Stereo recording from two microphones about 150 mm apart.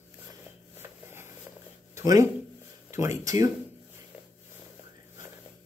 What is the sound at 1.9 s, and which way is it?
Speech, 20° right (ahead or behind).